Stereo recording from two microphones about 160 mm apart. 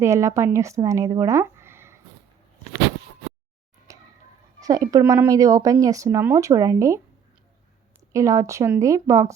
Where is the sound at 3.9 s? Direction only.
20° right (ahead or behind).